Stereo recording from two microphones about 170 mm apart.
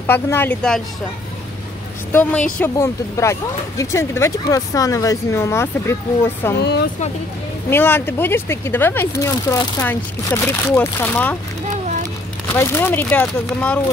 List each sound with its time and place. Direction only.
0.0 s speech: 15° left (ahead or behind)
2.6 s speech: 15° left (ahead or behind)
6.6 s speech: 80° left
7.7 s speech: 15° left (ahead or behind)
12.5 s speech: 10° left (ahead or behind)